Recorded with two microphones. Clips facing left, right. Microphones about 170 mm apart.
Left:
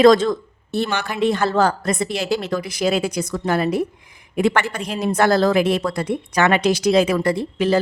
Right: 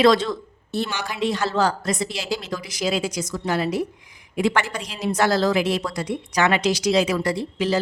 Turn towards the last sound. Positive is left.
turn(degrees=55)  # may be behind; listen again after turning